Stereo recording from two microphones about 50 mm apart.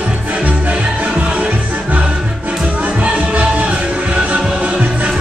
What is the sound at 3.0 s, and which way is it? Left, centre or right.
Music, right.